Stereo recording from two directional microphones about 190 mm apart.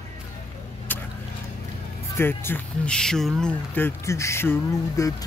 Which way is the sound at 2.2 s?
10° left (ahead or behind).